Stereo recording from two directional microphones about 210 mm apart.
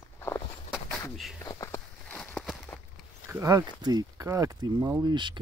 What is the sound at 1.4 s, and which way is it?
Walk, 15° left (ahead or behind).